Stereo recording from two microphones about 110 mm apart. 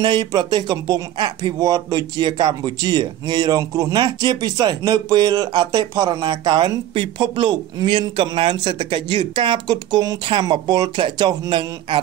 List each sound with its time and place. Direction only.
0.0 s speech: 45° right (ahead or behind)